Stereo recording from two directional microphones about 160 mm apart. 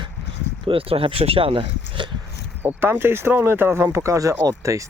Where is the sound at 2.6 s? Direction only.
15° right (ahead or behind).